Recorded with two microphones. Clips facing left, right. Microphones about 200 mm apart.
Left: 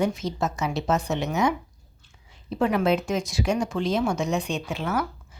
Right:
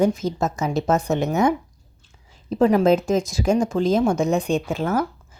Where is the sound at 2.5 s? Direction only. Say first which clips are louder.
Right 6 dB; 40° right (ahead or behind).